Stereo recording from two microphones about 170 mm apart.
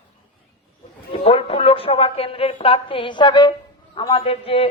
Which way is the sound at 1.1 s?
35° left (ahead or behind).